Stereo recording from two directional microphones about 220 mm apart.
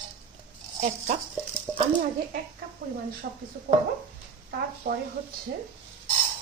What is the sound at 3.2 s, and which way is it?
Speech, 45° right (ahead or behind).